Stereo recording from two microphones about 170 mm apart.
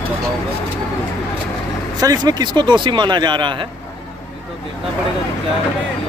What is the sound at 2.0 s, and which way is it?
Speech, 20° right (ahead or behind).